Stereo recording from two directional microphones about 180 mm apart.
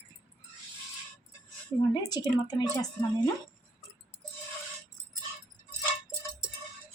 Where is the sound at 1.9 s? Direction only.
20° left (ahead or behind).